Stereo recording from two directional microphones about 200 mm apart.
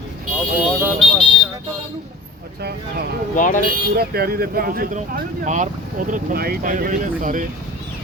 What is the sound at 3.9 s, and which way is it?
Speech, 50° right (ahead or behind).